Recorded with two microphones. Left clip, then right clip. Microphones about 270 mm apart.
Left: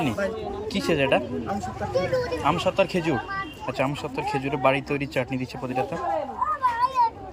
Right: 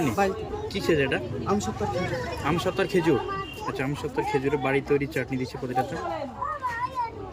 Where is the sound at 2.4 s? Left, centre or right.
Centre.